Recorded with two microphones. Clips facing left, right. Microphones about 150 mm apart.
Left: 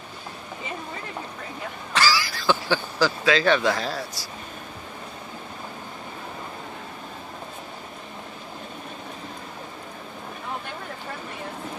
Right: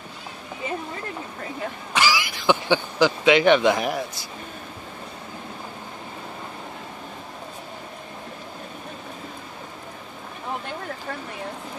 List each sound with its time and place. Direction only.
2.0 s speech: 15° right (ahead or behind)